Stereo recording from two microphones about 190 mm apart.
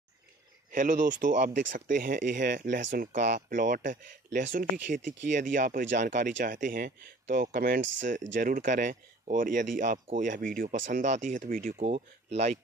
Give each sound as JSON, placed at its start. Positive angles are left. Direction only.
{"t": 0.7, "sound": "speech", "side_deg": -45}